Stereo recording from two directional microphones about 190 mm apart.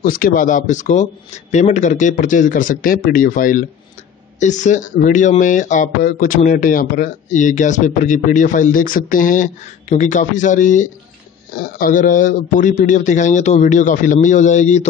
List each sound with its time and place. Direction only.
0.0 s speech: 45° left (ahead or behind)